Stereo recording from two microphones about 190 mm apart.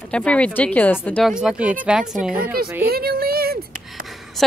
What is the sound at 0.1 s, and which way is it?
A woman's voice, 5° left (ahead or behind).